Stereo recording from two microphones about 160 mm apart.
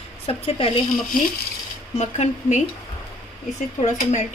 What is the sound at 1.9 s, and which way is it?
Speech, 45° left (ahead or behind).